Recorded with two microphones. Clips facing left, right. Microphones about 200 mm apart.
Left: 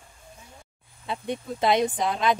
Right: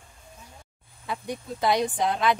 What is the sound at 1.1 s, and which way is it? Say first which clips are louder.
Speech: left 2 dB; 25° left (ahead or behind).